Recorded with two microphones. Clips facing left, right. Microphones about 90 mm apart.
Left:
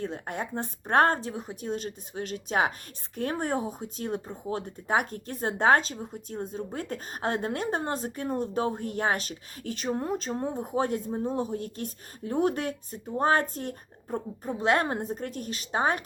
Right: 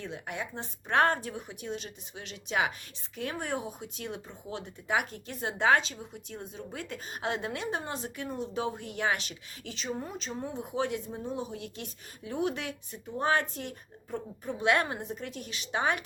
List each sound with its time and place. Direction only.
0.0 s speech: 45° left (ahead or behind)